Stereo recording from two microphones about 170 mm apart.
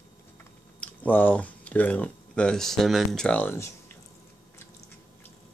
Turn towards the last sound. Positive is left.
turn(degrees=10)  # may be behind; listen again after turning